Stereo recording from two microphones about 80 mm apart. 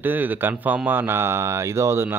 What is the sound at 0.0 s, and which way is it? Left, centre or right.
Speech, right.